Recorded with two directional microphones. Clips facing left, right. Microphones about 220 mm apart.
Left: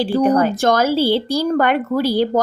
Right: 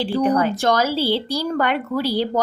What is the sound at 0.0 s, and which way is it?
Speech, 45° left (ahead or behind).